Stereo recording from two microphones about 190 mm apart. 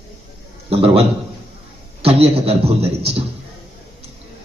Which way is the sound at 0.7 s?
30° right (ahead or behind).